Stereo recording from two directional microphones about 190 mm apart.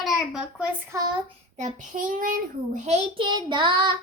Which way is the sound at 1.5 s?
40° right (ahead or behind).